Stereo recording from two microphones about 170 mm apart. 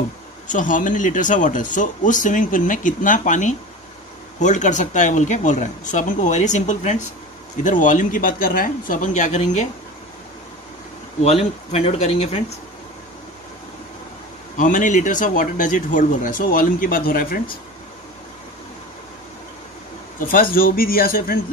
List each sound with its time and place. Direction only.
0.5 s speech: 50° left (ahead or behind)
11.2 s speech: 35° left (ahead or behind)
14.6 s speech: 50° left (ahead or behind)
20.2 s a man's voice: 55° left (ahead or behind)